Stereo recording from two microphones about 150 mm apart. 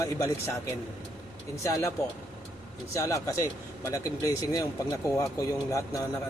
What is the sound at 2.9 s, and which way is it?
Speech, 20° left (ahead or behind).